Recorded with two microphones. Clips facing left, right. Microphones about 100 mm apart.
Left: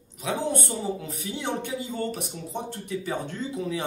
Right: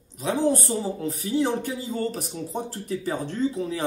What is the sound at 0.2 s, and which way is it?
Speech, 35° right (ahead or behind).